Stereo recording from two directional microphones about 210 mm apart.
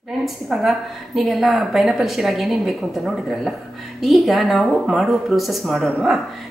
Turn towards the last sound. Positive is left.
turn(degrees=0)  # may be behind; listen again after turning